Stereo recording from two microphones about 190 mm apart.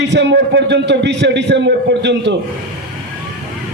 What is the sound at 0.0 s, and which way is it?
A man's voice, 70° right (ahead or behind).